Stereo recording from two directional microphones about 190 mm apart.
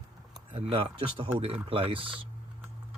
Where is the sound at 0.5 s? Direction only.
30° right (ahead or behind).